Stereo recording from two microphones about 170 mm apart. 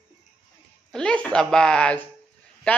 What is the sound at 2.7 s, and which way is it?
Speech, 5° left (ahead or behind).